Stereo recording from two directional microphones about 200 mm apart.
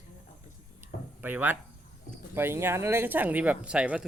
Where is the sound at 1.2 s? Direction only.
10° right (ahead or behind).